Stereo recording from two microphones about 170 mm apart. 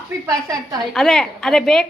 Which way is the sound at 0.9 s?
5° left (ahead or behind).